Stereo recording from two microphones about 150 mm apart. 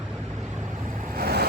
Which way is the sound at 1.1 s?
90° right.